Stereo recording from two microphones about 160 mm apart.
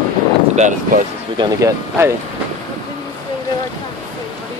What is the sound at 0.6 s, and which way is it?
Speech, 50° right (ahead or behind).